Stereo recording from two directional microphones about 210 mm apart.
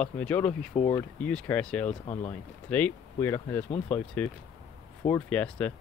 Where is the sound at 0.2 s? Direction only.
5° left (ahead or behind).